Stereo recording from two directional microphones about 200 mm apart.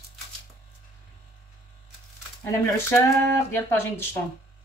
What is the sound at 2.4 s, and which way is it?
Speech, 15° left (ahead or behind).